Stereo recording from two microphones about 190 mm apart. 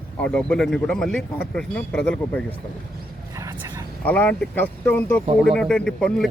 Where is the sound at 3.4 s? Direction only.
15° right (ahead or behind).